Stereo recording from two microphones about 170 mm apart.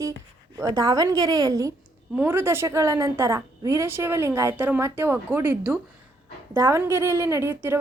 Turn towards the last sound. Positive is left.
turn(degrees=-15)  # may be behind; listen again after turning